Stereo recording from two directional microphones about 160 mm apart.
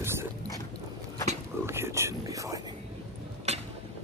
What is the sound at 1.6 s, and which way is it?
Whispering, 15° right (ahead or behind).